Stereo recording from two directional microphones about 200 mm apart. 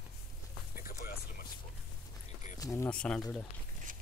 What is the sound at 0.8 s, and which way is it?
Music, 45° left (ahead or behind).